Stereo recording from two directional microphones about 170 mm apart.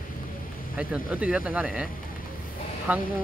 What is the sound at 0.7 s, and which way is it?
Speech, 10° right (ahead or behind).